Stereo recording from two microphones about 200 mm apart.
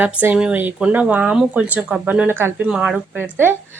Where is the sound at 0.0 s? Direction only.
10° right (ahead or behind).